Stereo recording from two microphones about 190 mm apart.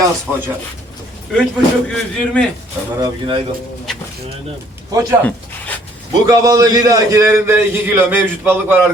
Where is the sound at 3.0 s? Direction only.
25° right (ahead or behind).